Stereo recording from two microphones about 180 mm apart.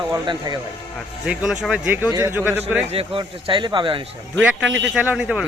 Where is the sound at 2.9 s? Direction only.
30° right (ahead or behind).